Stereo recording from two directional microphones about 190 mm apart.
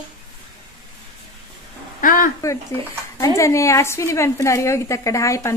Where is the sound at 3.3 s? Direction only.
15° left (ahead or behind).